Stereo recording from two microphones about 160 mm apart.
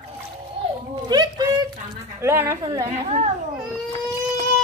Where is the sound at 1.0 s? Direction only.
25° right (ahead or behind).